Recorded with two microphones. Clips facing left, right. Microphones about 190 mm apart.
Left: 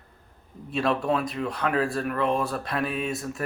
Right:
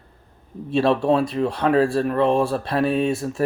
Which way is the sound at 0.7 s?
30° right (ahead or behind).